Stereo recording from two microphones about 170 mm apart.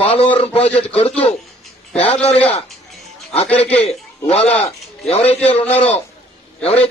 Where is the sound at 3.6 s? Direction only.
35° left (ahead or behind).